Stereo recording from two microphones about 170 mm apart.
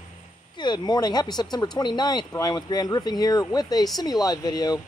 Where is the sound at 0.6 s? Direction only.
25° left (ahead or behind).